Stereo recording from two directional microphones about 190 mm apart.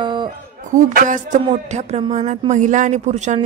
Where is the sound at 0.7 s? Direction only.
45° right (ahead or behind).